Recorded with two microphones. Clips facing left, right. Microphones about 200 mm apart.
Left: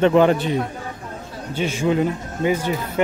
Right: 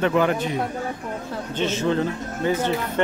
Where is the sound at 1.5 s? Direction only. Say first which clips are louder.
Left 2 dB; 10° left (ahead or behind).